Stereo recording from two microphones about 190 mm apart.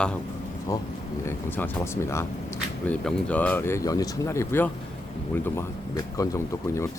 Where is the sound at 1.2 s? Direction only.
10° left (ahead or behind).